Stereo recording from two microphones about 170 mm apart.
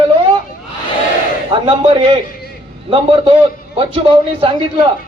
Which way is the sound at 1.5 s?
30° right (ahead or behind).